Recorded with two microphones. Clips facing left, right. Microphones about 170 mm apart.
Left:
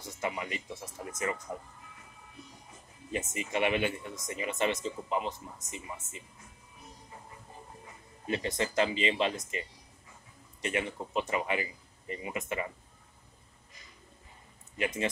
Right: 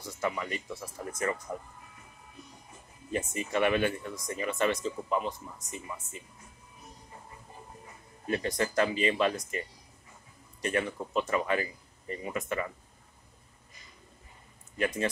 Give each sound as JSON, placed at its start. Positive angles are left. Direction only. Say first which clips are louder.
{"t": 0.0, "sound": "speech", "louder": "right 2 dB", "side_deg": 20}
{"t": 3.1, "sound": "speech", "louder": "right 2 dB", "side_deg": 20}
{"t": 8.3, "sound": "speech", "louder": "right 2 dB", "side_deg": 20}
{"t": 14.8, "sound": "speech", "louder": "right 2 dB", "side_deg": 20}